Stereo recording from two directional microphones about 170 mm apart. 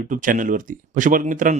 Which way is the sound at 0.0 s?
50° right (ahead or behind).